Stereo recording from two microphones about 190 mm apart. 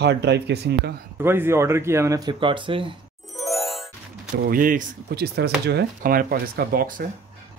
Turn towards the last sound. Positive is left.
turn(degrees=-50)  # may be behind; listen again after turning